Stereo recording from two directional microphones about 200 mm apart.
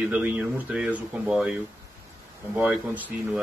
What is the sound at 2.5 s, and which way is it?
Speech, 10° right (ahead or behind).